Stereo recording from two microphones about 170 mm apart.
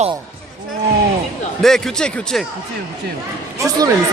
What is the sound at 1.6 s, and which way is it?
Speech, centre (ahead or behind).